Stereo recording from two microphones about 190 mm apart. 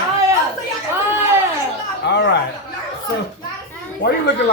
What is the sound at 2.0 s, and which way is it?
Speech, 65° left (ahead or behind).